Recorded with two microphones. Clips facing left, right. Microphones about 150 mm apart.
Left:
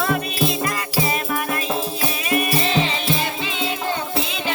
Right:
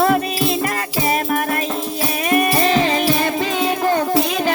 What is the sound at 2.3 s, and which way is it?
Music, 45° right (ahead or behind).